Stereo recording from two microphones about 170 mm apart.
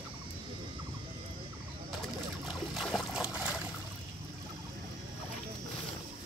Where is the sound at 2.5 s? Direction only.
Centre (ahead or behind).